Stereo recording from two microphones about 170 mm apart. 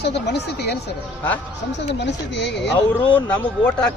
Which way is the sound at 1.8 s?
90° left.